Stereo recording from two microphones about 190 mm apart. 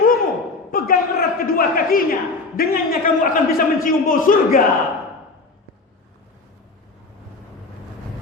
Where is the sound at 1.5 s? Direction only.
50° left (ahead or behind).